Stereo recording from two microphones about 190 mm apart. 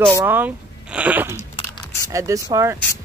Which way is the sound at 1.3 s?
25° left (ahead or behind).